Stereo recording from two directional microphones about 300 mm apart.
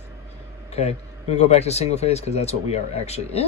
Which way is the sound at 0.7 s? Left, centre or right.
Left.